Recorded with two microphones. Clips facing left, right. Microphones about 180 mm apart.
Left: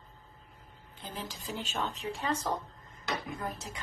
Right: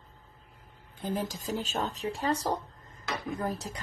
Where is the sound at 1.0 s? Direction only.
45° right (ahead or behind).